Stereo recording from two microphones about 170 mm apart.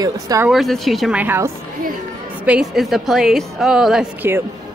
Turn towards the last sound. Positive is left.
turn(degrees=-5)  # may be behind; listen again after turning